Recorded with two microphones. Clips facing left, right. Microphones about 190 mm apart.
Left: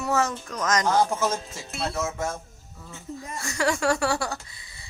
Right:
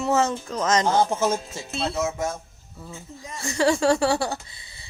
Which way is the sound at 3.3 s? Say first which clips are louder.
Right 5 dB; 25° right (ahead or behind).